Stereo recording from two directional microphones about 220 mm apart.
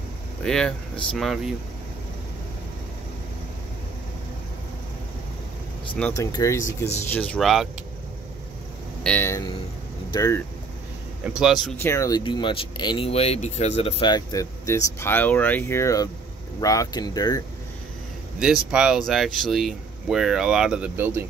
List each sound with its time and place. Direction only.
0.4 s speech: 5° left (ahead or behind)
5.9 s speech: 5° left (ahead or behind)
9.0 s speech: 10° left (ahead or behind)
11.2 s speech: 5° right (ahead or behind)
11.8 s speech: 15° left (ahead or behind)
18.4 s speech: 5° right (ahead or behind)